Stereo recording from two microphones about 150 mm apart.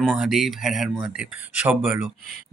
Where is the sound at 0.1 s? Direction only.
5° right (ahead or behind).